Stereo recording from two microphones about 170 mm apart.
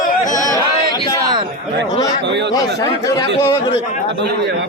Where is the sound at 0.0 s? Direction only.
50° left (ahead or behind).